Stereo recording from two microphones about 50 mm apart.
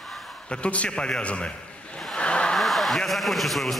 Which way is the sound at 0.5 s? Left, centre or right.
Left.